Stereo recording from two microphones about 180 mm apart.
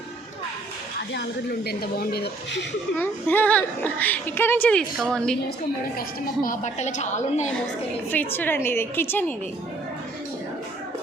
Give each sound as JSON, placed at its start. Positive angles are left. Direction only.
{"t": 1.1, "sound": "speech", "side_deg": 70}
{"t": 3.0, "sound": "speech", "side_deg": 10}
{"t": 6.0, "sound": "a woman's voice", "side_deg": 50}
{"t": 8.1, "sound": "speech", "side_deg": 10}